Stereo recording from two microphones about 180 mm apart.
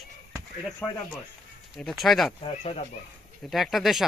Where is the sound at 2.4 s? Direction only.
35° left (ahead or behind).